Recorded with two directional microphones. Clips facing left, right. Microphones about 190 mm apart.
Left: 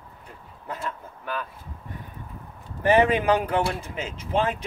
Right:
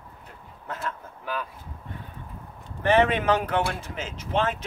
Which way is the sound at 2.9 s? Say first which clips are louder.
Left 1 dB; 10° left (ahead or behind).